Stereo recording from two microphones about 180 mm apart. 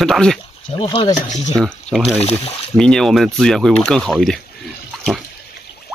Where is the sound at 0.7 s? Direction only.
25° left (ahead or behind).